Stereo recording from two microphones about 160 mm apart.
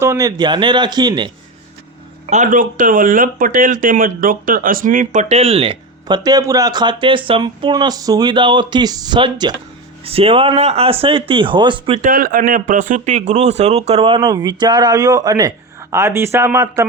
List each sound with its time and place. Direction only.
0.0 s speech: 20° right (ahead or behind)
2.2 s speech: 50° right (ahead or behind); by 11.9 s 30° right (ahead or behind)
12.0 s speech: 60° right (ahead or behind); by 14.2 s 35° right (ahead or behind)
14.2 s speech: 20° right (ahead or behind)